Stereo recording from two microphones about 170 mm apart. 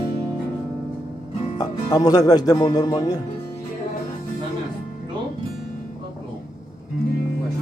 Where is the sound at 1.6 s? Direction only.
20° left (ahead or behind).